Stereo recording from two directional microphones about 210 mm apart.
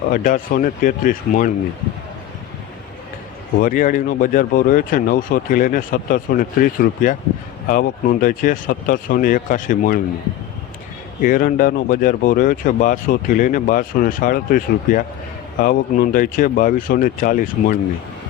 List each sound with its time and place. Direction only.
0.1 s speech: 40° left (ahead or behind)
3.6 s speech: 40° left (ahead or behind)
11.2 s speech: 40° left (ahead or behind)